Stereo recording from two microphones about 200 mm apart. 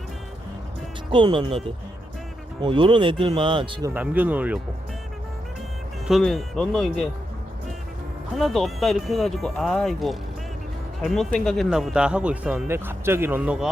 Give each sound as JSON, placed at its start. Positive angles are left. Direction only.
{"t": 1.1, "sound": "speech", "side_deg": -25}
{"t": 2.6, "sound": "speech", "side_deg": -25}
{"t": 3.9, "sound": "speech", "side_deg": -5}
{"t": 6.1, "sound": "speech", "side_deg": 0}
{"t": 8.4, "sound": "speech", "side_deg": 0}